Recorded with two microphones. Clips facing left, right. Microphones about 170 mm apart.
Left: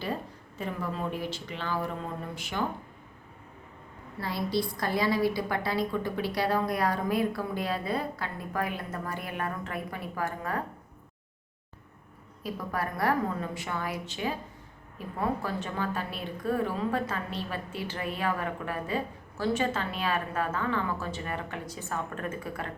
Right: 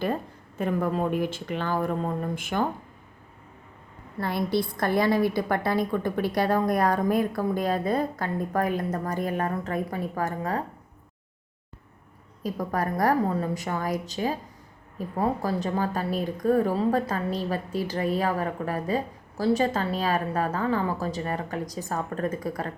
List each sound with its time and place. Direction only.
0.6 s a woman's voice: 50° right (ahead or behind)
4.2 s a woman's voice: 55° right (ahead or behind); by 10.6 s 40° right (ahead or behind)
12.4 s a woman's voice: 40° right (ahead or behind)